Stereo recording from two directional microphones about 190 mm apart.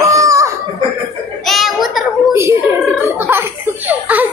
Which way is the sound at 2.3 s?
15° right (ahead or behind).